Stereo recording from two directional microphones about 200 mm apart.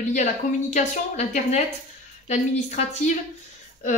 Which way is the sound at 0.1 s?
35° left (ahead or behind).